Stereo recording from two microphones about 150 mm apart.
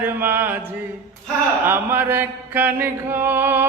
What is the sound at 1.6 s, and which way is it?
Chant, 15° right (ahead or behind).